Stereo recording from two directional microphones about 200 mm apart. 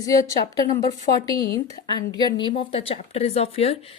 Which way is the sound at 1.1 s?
55° left (ahead or behind).